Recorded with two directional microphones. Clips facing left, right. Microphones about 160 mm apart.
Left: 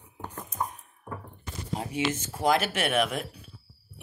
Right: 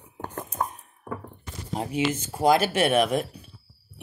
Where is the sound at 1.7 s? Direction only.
30° right (ahead or behind).